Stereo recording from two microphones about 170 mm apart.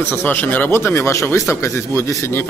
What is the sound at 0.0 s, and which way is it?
Speech, 10° left (ahead or behind).